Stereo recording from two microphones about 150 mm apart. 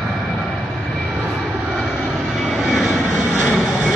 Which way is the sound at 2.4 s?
Centre (ahead or behind).